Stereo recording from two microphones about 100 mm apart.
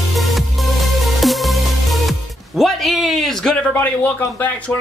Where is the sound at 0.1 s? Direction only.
Centre (ahead or behind).